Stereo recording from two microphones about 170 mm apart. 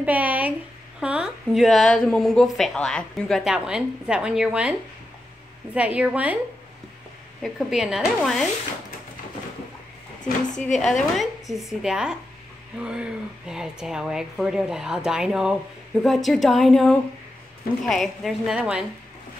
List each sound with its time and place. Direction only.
0.0 s speech: 10° right (ahead or behind)
5.8 s a woman's voice: 5° right (ahead or behind)
7.4 s speech: centre (ahead or behind)
10.2 s a woman's voice: 50° left (ahead or behind)
10.7 s speech: centre (ahead or behind)